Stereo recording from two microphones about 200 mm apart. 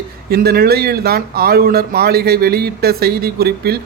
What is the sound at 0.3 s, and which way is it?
Speech, 50° right (ahead or behind).